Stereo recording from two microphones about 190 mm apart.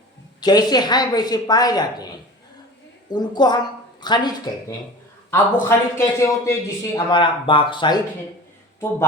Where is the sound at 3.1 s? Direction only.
20° left (ahead or behind).